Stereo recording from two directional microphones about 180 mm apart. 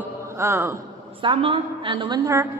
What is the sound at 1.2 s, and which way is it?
A woman's voice, 30° right (ahead or behind).